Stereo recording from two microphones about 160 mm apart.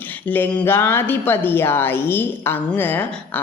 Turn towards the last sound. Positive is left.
turn(degrees=10)  # may be behind; listen again after turning